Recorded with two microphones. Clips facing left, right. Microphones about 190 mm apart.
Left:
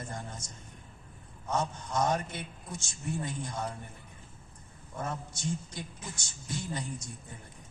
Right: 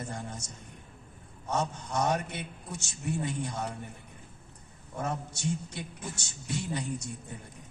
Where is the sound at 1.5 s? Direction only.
65° right (ahead or behind).